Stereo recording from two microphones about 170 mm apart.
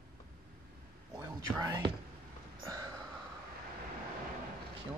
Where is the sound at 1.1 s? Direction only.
20° right (ahead or behind).